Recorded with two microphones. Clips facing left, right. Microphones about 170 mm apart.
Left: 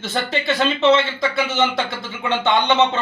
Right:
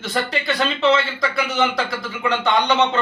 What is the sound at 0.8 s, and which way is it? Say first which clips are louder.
Speech: left 2 dB; 25° left (ahead or behind).